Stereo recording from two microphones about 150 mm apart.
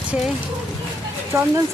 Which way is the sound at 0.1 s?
Centre (ahead or behind).